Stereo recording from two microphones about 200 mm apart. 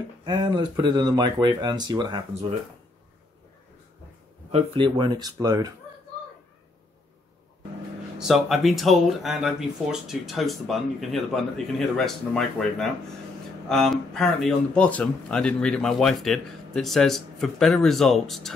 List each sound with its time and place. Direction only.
0.2 s speech: 20° right (ahead or behind)
4.5 s speech: 30° right (ahead or behind)
8.2 s speech: centre (ahead or behind)